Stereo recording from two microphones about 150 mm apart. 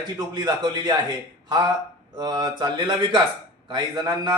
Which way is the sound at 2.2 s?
25° right (ahead or behind).